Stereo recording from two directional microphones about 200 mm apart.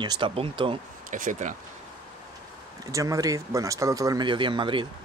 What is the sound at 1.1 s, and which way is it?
Speech, 40° right (ahead or behind).